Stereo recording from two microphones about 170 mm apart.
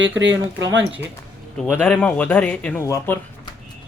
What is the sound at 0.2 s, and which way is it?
Speech, 90° right.